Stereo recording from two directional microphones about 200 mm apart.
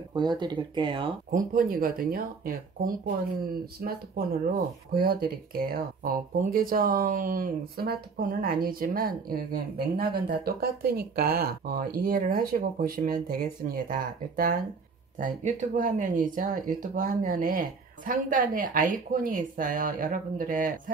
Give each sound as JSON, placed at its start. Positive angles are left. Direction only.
{"t": 0.1, "sound": "speech", "side_deg": -20}
{"t": 1.3, "sound": "speech", "side_deg": -45}